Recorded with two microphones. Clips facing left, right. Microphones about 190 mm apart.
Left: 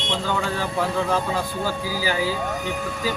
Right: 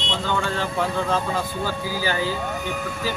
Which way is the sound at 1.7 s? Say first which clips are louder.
Left 1 dB; 10° left (ahead or behind).